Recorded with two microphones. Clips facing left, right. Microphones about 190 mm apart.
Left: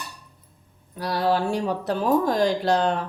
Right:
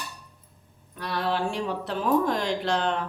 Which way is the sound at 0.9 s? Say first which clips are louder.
Left 5 dB; 35° left (ahead or behind).